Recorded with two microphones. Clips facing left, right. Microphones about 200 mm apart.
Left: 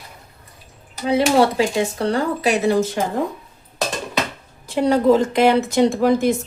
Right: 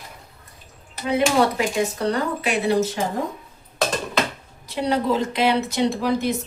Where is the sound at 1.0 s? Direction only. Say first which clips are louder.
Left 3 dB; 30° left (ahead or behind).